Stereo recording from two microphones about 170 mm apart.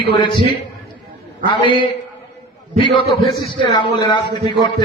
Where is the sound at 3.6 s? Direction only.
25° left (ahead or behind).